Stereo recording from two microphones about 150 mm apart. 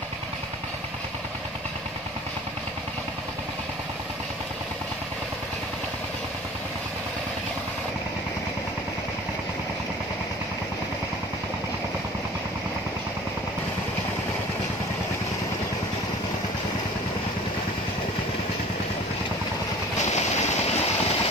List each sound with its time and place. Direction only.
20.0 s train: 50° left (ahead or behind)